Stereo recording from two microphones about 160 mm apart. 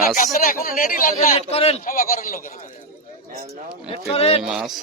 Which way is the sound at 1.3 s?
40° left (ahead or behind).